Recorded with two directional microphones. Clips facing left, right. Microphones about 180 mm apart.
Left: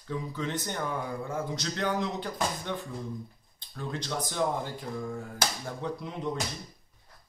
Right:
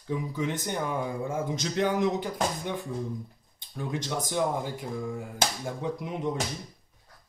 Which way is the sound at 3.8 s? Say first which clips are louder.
Right 2 dB; 15° right (ahead or behind).